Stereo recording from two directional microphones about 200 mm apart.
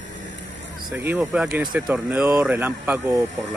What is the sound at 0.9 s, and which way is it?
Speech, 10° right (ahead or behind).